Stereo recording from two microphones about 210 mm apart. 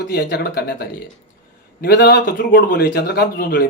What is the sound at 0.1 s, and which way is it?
A man's voice, 50° left (ahead or behind).